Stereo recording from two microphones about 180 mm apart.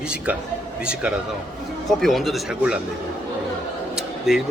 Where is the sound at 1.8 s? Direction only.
Centre (ahead or behind).